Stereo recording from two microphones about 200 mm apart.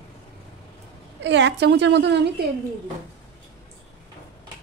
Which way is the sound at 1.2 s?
60° right (ahead or behind).